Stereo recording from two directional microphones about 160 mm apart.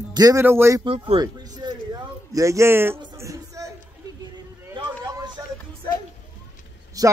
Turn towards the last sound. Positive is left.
turn(degrees=-20)  # may be behind; listen again after turning